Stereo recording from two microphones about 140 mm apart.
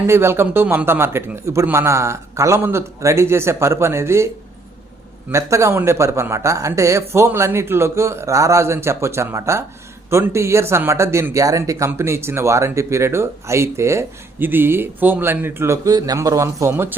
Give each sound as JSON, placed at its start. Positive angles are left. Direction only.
{"t": 0.1, "sound": "speech", "side_deg": -15}
{"t": 5.3, "sound": "speech", "side_deg": -20}